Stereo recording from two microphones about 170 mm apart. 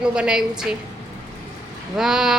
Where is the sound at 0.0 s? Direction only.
5° right (ahead or behind).